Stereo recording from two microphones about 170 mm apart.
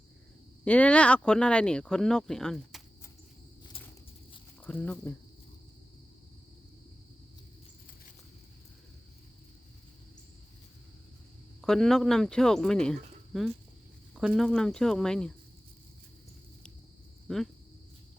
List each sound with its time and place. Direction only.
0.6 s speech: 5° left (ahead or behind)
3.6 s a sound: 30° left (ahead or behind)
4.6 s speech: 10° left (ahead or behind)
11.6 s speech: 5° left (ahead or behind)
17.2 s speech: centre (ahead or behind)